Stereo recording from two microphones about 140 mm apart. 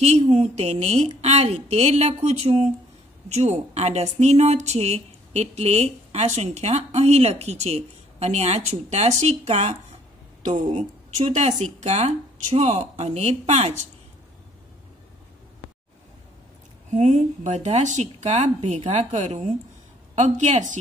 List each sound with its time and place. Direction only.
0.0 s a woman's voice: 50° right (ahead or behind)
16.9 s speech: 55° right (ahead or behind)